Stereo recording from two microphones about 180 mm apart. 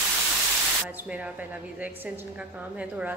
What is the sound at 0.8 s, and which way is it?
A woman's voice, 10° right (ahead or behind).